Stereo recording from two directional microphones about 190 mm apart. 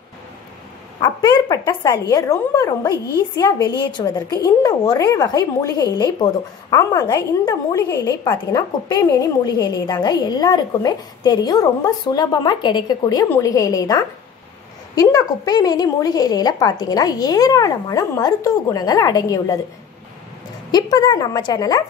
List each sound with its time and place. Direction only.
1.0 s a woman's voice: 20° left (ahead or behind)
20.7 s a woman's voice: 20° left (ahead or behind)